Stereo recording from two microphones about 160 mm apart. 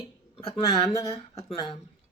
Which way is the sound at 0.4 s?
30° left (ahead or behind).